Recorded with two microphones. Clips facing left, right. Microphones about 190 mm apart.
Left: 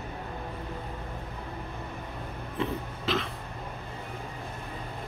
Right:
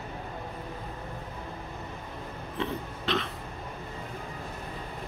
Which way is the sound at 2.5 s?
Centre (ahead or behind).